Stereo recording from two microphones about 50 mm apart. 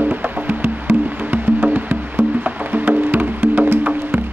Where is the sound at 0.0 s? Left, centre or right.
Right.